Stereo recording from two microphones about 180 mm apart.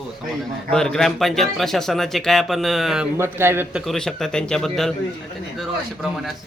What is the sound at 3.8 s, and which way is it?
A man's voice, centre (ahead or behind).